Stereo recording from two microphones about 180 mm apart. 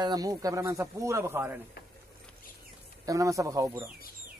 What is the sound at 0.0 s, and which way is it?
A man's voice, 20° right (ahead or behind).